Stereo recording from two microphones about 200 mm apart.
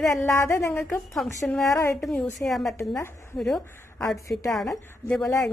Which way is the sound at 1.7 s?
15° left (ahead or behind).